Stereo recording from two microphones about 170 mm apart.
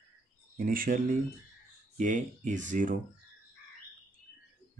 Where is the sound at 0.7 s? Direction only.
55° right (ahead or behind).